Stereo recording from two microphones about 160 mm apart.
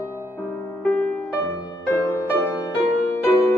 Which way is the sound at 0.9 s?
10° left (ahead or behind).